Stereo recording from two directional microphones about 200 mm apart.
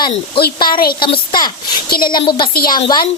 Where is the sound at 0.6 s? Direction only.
45° left (ahead or behind).